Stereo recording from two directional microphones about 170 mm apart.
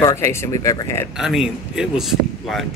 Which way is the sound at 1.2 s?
5° right (ahead or behind).